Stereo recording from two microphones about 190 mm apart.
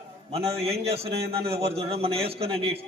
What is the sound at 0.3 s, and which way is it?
A man's voice, 30° right (ahead or behind).